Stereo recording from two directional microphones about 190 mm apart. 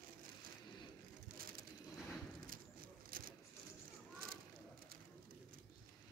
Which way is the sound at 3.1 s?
50° right (ahead or behind).